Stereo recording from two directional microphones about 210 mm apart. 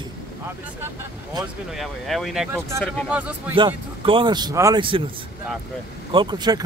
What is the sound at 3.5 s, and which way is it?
A man's voice, 25° right (ahead or behind).